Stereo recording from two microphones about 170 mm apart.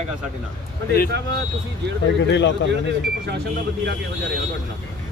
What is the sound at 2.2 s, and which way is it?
Speech, 90° left.